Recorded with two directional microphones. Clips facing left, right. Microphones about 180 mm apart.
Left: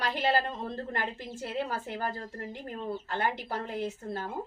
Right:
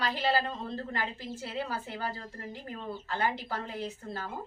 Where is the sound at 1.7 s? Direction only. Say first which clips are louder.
Left 2 dB; 50° left (ahead or behind).